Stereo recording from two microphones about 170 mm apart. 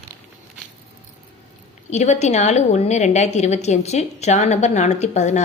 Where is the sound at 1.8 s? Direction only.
40° left (ahead or behind).